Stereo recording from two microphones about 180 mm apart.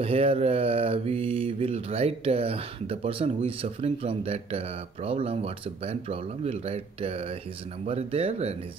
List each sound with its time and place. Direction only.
0.0 s mantra: 35° right (ahead or behind)